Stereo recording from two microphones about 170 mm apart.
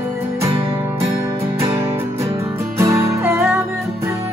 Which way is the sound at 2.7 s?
15° right (ahead or behind).